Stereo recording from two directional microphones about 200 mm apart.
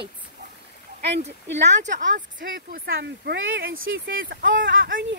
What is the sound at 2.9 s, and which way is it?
Speech, 65° right (ahead or behind).